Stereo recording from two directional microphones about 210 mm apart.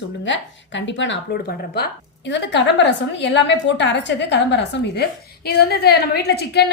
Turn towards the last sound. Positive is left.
turn(degrees=50)  # may be behind; listen again after turning